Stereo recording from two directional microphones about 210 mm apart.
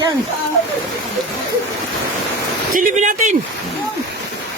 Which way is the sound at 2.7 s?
40° right (ahead or behind).